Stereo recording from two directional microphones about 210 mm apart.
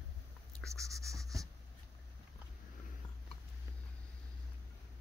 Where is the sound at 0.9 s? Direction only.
15° right (ahead or behind).